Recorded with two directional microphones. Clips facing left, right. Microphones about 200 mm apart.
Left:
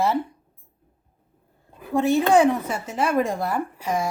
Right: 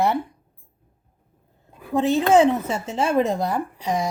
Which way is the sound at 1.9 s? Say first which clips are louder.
Right 1 dB; 20° right (ahead or behind).